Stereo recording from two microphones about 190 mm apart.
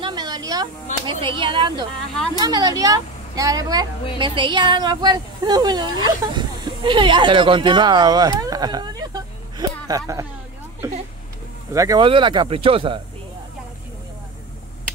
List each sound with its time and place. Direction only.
0.0 s a sound: 20° right (ahead or behind)
1.0 s speech: 25° right (ahead or behind)
11.7 s speech: 15° right (ahead or behind)